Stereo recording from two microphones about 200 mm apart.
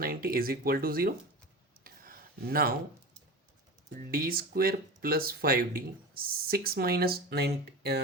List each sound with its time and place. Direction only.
0.0 s speech: 45° right (ahead or behind)
1.8 s a sound: 45° right (ahead or behind)
4.1 s speech: 50° right (ahead or behind)